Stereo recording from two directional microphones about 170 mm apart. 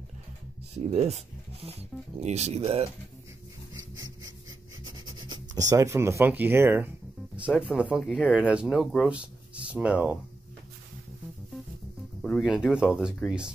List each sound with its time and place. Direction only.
0.8 s speech: 40° right (ahead or behind)
3.7 s a sound: 20° right (ahead or behind)
5.0 s speech: 25° right (ahead or behind); by 10.1 s 5° right (ahead or behind)
12.2 s speech: centre (ahead or behind)